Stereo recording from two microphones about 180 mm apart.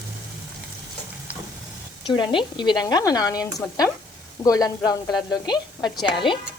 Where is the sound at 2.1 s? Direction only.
25° left (ahead or behind).